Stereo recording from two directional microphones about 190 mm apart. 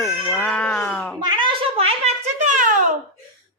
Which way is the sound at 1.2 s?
25° right (ahead or behind).